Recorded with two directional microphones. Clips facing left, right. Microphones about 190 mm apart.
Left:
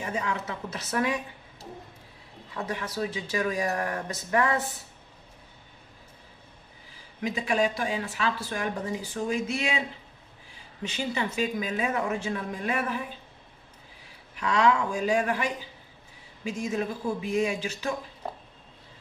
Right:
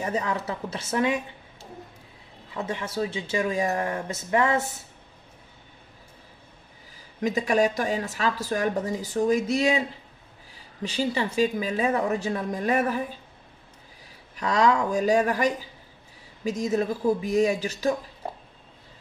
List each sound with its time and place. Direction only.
0.0 s speech: 35° right (ahead or behind)
2.5 s speech: 25° right (ahead or behind)
7.2 s a woman's voice: 40° right (ahead or behind)
14.3 s a woman's voice: 35° right (ahead or behind)